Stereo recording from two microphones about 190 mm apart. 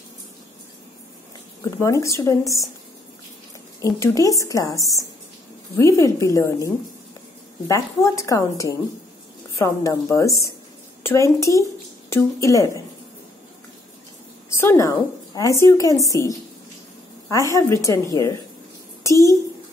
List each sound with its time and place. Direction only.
1.6 s speech: 15° left (ahead or behind)
3.8 s a woman's voice: 15° left (ahead or behind)
14.6 s speech: 15° left (ahead or behind)